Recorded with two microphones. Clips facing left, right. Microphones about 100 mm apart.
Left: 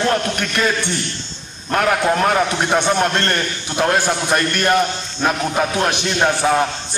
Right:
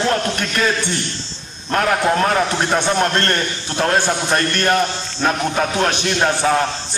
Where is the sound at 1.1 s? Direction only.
35° right (ahead or behind).